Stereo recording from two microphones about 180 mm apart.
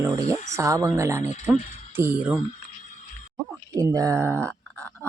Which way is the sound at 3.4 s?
20° right (ahead or behind).